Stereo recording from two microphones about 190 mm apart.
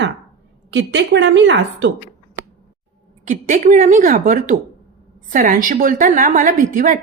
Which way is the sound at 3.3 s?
45° right (ahead or behind).